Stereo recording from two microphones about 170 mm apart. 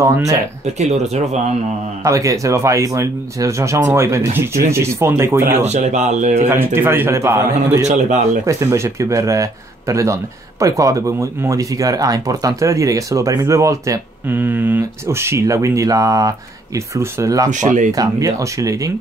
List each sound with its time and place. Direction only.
0.0 s speech: 15° right (ahead or behind)
0.7 s speech: 40° right (ahead or behind)
2.0 s speech: 20° right (ahead or behind)
5.7 s speech: 45° right (ahead or behind)
6.4 s speech: 15° right (ahead or behind)
17.5 s speech: 45° right (ahead or behind)
17.9 s speech: 20° right (ahead or behind)